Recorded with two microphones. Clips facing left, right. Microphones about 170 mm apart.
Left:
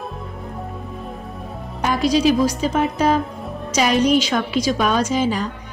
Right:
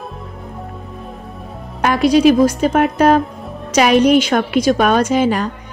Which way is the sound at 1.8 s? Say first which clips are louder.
Right 5 dB; 65° right (ahead or behind).